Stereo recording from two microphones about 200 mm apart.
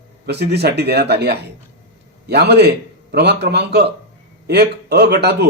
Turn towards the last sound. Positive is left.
turn(degrees=-55)  # may be behind; listen again after turning